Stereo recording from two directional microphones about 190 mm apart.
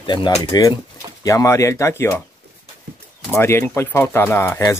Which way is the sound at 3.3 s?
15° left (ahead or behind).